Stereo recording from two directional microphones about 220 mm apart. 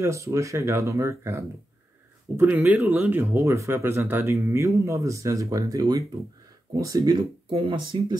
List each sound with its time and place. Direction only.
0.0 s speech: 15° right (ahead or behind)